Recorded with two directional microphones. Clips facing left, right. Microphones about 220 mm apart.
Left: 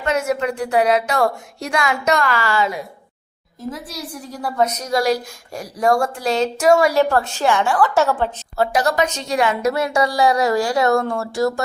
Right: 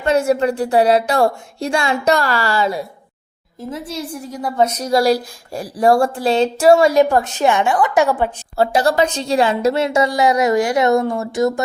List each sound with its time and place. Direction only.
0.0 s a woman's voice: 30° right (ahead or behind)
4.8 s speech: 35° right (ahead or behind)
6.9 s a woman's voice: 15° right (ahead or behind)
8.5 s a woman's voice: 30° right (ahead or behind)